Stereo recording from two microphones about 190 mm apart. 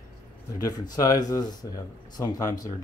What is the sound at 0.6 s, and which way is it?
Speech, 20° left (ahead or behind).